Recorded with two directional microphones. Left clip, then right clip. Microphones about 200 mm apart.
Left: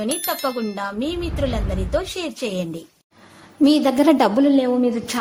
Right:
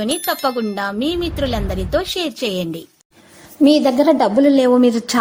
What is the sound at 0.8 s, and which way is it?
A woman's voice, 30° right (ahead or behind).